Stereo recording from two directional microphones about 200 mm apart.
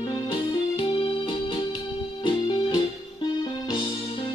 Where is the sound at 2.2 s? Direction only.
20° left (ahead or behind).